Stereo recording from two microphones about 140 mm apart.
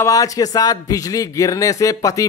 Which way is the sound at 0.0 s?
25° left (ahead or behind).